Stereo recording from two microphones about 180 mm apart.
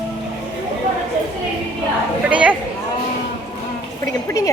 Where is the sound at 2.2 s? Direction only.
5° right (ahead or behind).